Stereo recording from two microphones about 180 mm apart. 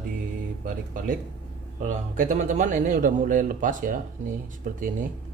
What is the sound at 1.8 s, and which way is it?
A man's voice, 45° right (ahead or behind).